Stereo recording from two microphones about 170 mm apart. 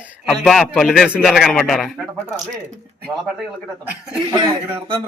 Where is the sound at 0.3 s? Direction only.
Centre (ahead or behind).